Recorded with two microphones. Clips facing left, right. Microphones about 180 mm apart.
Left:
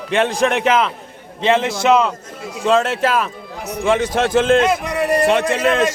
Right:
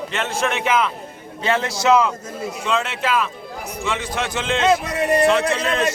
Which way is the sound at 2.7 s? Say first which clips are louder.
Left 7 dB; 50° left (ahead or behind).